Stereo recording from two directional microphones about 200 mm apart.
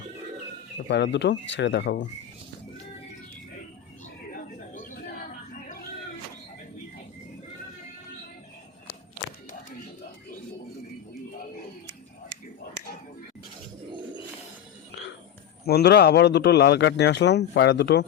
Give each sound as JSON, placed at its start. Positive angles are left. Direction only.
{"t": 0.9, "sound": "a man's voice", "side_deg": 60}
{"t": 4.4, "sound": "a sound", "side_deg": 40}
{"t": 15.6, "sound": "a man's voice", "side_deg": 55}